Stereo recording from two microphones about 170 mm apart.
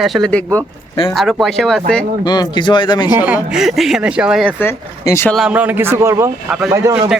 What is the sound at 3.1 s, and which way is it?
Speech, 10° right (ahead or behind).